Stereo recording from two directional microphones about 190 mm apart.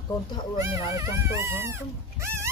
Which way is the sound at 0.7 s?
15° right (ahead or behind).